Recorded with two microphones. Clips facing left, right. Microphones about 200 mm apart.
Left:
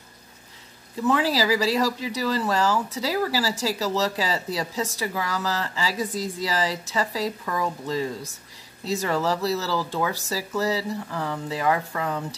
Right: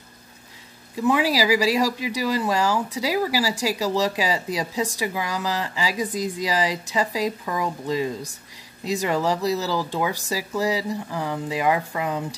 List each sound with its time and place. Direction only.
1.0 s speech: 10° right (ahead or behind)